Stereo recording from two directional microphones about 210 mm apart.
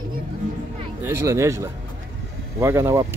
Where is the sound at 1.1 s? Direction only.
10° right (ahead or behind).